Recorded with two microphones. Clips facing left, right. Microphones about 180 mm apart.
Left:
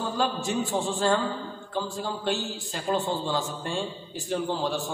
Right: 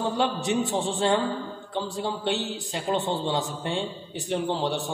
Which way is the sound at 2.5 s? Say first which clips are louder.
Right 1 dB; 20° right (ahead or behind).